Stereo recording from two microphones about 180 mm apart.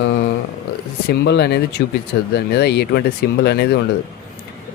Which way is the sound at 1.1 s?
65° left (ahead or behind).